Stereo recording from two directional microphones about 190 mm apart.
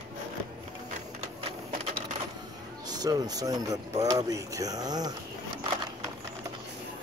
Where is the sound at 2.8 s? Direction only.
20° right (ahead or behind).